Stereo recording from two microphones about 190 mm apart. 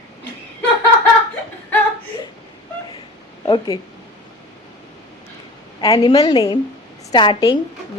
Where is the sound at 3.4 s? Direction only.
25° left (ahead or behind).